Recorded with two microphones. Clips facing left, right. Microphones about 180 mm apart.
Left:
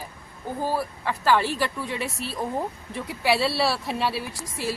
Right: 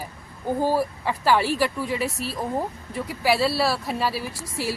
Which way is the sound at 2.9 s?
Centre (ahead or behind).